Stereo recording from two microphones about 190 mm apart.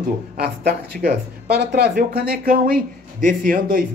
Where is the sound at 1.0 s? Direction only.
60° right (ahead or behind).